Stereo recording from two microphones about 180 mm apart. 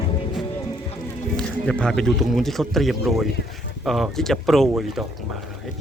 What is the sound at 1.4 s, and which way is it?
A man's voice, 5° left (ahead or behind).